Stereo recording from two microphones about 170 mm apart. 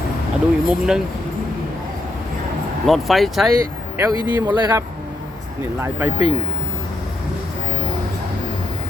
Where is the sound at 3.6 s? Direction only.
20° right (ahead or behind).